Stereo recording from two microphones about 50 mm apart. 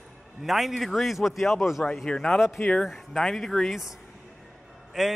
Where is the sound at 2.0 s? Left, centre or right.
Centre.